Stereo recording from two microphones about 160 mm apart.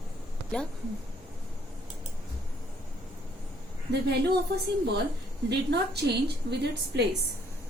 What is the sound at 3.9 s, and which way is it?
Speech, 90° right.